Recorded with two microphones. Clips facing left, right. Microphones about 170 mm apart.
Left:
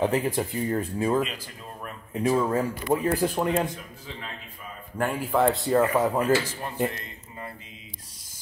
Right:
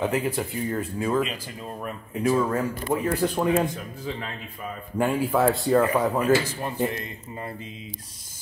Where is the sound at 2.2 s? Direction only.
20° left (ahead or behind).